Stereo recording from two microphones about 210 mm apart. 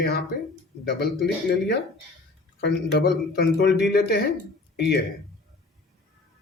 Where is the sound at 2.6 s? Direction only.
50° left (ahead or behind).